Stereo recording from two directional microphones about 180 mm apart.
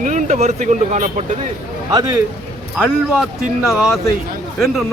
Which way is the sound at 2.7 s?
Centre (ahead or behind).